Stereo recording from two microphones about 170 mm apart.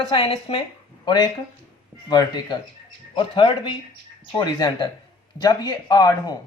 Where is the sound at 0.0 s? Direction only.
30° left (ahead or behind).